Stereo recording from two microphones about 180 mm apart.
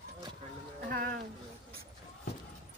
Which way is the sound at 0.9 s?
50° right (ahead or behind).